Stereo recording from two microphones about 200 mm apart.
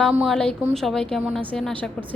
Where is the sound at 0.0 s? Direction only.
Centre (ahead or behind).